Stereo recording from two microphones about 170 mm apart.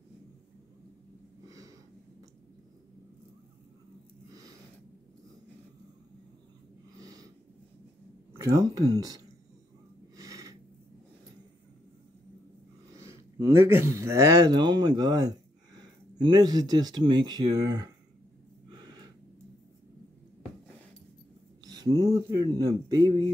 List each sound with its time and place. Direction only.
7.0 s snort: 20° right (ahead or behind)
8.4 s speech: 20° right (ahead or behind)
10.1 s snort: 20° right (ahead or behind)
13.0 s speech: 15° right (ahead or behind)
18.7 s gasp: 25° right (ahead or behind)
21.6 s speech: 20° right (ahead or behind)